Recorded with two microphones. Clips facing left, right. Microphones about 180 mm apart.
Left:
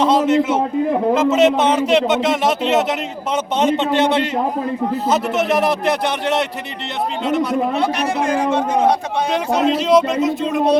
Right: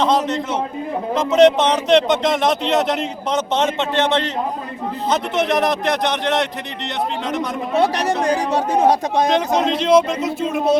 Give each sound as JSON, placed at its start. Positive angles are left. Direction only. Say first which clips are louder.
{"t": 0.0, "sound": "a man's voice", "louder": "left 4 dB", "side_deg": 5}
{"t": 8.0, "sound": "speech", "louder": "left 1 dB", "side_deg": -35}
{"t": 9.3, "sound": "speech", "louder": "left 1 dB", "side_deg": 5}